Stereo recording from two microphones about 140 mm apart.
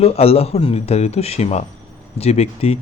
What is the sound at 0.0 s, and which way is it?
A man's voice, 45° left (ahead or behind).